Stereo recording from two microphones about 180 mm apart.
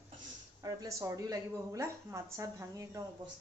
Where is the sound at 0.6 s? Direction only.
20° right (ahead or behind).